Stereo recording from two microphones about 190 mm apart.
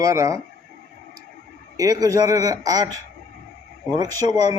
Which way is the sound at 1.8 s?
20° right (ahead or behind).